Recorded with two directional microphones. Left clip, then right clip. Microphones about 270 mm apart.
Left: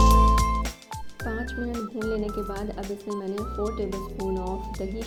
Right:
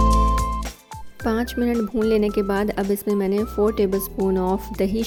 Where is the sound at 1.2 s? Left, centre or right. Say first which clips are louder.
Right 9 dB; right.